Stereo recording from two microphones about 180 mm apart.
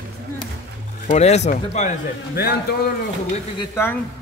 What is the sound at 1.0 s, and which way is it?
Speech, 40° left (ahead or behind).